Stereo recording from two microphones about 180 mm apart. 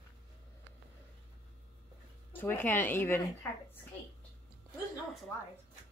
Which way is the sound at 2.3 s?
10° left (ahead or behind).